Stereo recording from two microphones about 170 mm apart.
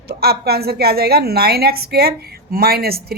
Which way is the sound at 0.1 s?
65° right (ahead or behind).